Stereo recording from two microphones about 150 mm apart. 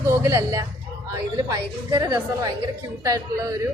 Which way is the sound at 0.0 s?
20° right (ahead or behind).